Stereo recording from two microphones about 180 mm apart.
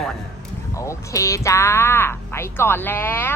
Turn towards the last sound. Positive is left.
turn(degrees=10)  # may be behind; listen again after turning